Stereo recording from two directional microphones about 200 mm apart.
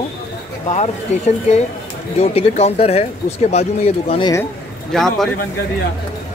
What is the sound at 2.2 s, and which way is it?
Speech, 30° left (ahead or behind).